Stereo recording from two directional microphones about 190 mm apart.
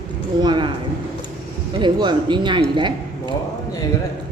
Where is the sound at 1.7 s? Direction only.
25° right (ahead or behind).